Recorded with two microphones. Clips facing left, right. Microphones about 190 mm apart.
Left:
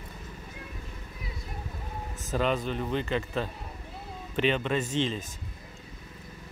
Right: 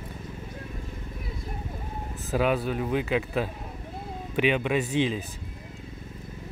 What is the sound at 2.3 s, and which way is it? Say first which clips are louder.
A man's voice: right 3 dB; 10° right (ahead or behind).